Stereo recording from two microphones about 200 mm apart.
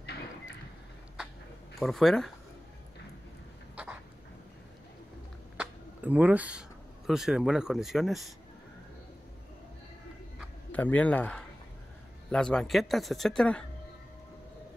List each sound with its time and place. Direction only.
1.8 s speech: centre (ahead or behind)
5.6 s a sound: 5° right (ahead or behind)
7.1 s speech: centre (ahead or behind)
10.7 s speech: 10° left (ahead or behind)